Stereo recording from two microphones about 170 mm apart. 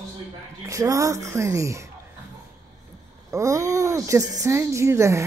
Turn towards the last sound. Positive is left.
turn(degrees=-15)  # may be behind; listen again after turning